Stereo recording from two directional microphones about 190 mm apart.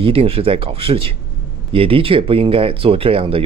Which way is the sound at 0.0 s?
30° right (ahead or behind).